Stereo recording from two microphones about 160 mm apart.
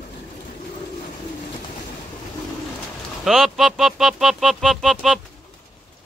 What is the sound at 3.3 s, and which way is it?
Speech, centre (ahead or behind).